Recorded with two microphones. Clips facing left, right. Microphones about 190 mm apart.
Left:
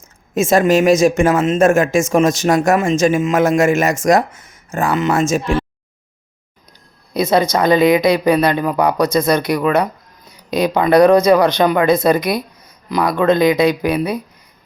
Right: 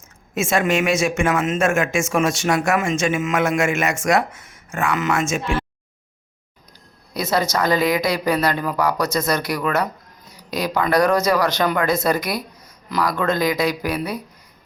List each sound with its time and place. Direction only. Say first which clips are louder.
0.3 s speech: left 7 dB; 35° left (ahead or behind)
7.1 s speech: left 6 dB; 20° left (ahead or behind)